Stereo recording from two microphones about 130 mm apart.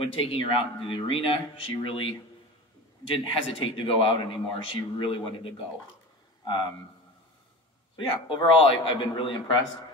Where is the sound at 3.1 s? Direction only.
45° left (ahead or behind).